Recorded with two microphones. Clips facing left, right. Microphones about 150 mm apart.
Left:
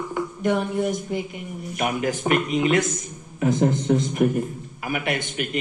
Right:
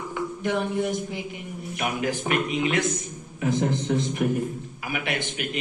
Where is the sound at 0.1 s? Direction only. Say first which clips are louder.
Left 4 dB; 45° left (ahead or behind).